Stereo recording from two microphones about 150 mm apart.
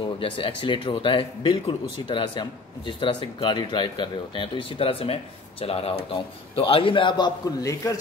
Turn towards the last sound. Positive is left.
turn(degrees=25)  # may be behind; listen again after turning